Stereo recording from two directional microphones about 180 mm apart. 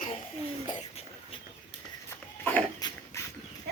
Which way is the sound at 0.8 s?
35° left (ahead or behind).